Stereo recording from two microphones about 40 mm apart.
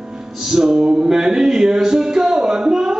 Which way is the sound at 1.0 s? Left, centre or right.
Centre.